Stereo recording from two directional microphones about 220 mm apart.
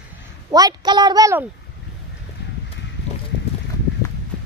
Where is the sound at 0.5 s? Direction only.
15° right (ahead or behind).